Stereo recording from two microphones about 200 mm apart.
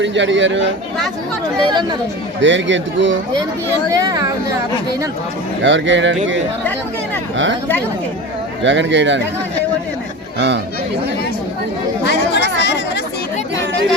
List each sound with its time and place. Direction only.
0.0 s speech: 65° right (ahead or behind)
2.4 s speech: 65° right (ahead or behind)
3.9 s speech: 20° right (ahead or behind)
5.6 s speech: 65° right (ahead or behind)
8.6 s speech: 65° right (ahead or behind)
10.3 s speech: 60° right (ahead or behind)
12.0 s chatter: 60° left (ahead or behind)